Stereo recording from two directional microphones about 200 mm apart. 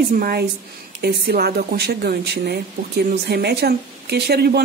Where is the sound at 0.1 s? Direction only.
50° right (ahead or behind).